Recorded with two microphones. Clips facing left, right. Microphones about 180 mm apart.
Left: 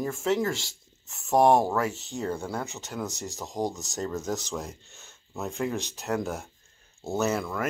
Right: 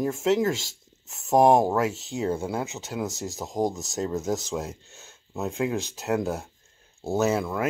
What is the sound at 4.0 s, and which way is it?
Speech, 20° right (ahead or behind).